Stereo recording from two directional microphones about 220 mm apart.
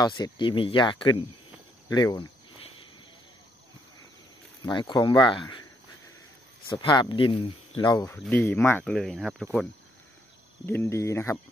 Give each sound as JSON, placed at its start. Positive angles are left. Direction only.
{"t": 0.0, "sound": "speech", "side_deg": 20}
{"t": 1.9, "sound": "cricket", "side_deg": 15}
{"t": 4.6, "sound": "speech", "side_deg": 20}
{"t": 6.7, "sound": "speech", "side_deg": 20}
{"t": 8.0, "sound": "speech", "side_deg": 10}
{"t": 10.6, "sound": "speech", "side_deg": 10}